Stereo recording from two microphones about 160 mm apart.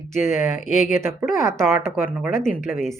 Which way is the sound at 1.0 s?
15° right (ahead or behind).